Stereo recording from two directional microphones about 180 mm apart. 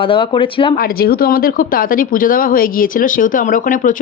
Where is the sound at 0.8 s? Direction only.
55° left (ahead or behind).